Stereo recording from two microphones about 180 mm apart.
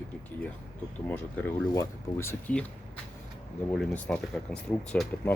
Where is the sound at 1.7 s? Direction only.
15° left (ahead or behind).